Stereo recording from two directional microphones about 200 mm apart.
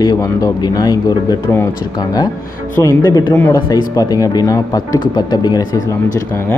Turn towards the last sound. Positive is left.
turn(degrees=10)  # may be behind; listen again after turning